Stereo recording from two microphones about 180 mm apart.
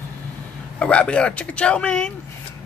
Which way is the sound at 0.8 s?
5° left (ahead or behind).